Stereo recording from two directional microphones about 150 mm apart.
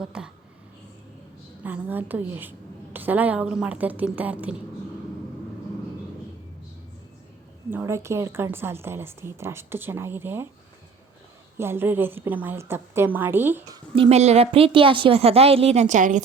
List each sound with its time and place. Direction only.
0.0 s a woman's voice: 5° right (ahead or behind)
1.6 s a woman's voice: 10° right (ahead or behind)
7.7 s a woman's voice: 15° right (ahead or behind)
11.5 s a woman's voice: 15° right (ahead or behind)
13.9 s a woman's voice: 40° right (ahead or behind)